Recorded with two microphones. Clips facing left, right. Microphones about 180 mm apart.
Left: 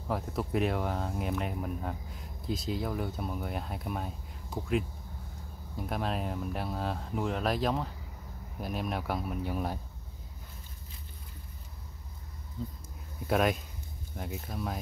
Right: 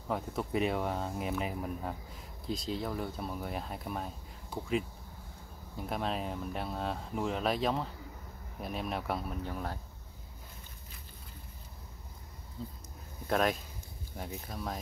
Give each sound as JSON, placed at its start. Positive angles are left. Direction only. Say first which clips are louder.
{"t": 0.1, "sound": "speech", "louder": "left 1 dB", "side_deg": 0}
{"t": 13.3, "sound": "speech", "louder": "left 2 dB", "side_deg": 5}